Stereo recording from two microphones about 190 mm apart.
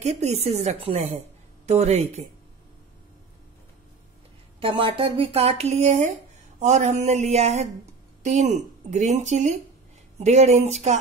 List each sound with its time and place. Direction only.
0.0 s speech: 35° right (ahead or behind)
4.6 s speech: 25° right (ahead or behind)